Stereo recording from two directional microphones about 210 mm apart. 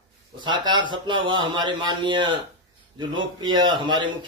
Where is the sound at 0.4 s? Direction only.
20° right (ahead or behind).